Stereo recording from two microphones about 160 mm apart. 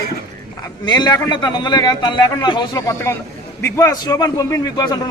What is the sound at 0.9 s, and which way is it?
A man's voice, 25° left (ahead or behind).